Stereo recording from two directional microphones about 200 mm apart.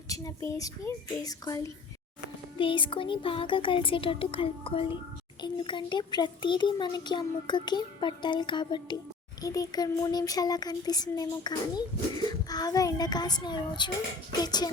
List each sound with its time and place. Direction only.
0.1 s a child's voice: 15° left (ahead or behind)